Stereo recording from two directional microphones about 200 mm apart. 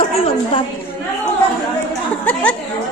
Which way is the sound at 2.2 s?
5° left (ahead or behind).